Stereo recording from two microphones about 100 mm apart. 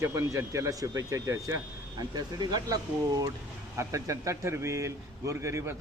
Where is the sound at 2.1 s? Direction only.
45° right (ahead or behind).